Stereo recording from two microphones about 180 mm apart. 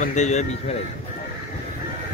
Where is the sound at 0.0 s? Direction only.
40° left (ahead or behind).